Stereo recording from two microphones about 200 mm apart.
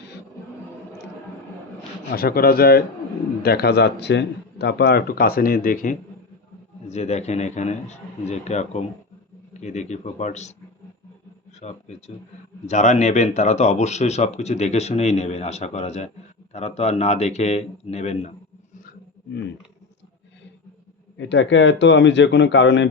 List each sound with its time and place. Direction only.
2.1 s speech: 50° left (ahead or behind)
11.6 s speech: 35° left (ahead or behind)
18.9 s dog: 60° left (ahead or behind)
21.2 s a man's voice: 65° left (ahead or behind)